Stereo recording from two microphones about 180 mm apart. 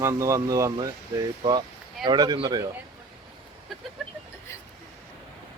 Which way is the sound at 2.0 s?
20° right (ahead or behind).